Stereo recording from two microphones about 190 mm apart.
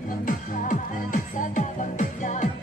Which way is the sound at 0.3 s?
45° left (ahead or behind).